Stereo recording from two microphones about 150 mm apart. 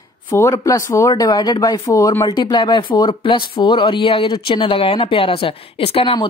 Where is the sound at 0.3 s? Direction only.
20° left (ahead or behind).